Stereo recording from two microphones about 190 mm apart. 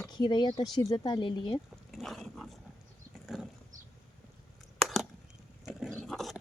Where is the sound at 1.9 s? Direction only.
Centre (ahead or behind).